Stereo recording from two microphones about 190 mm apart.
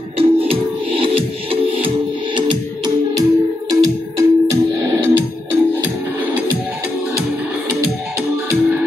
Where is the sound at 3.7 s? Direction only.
15° right (ahead or behind).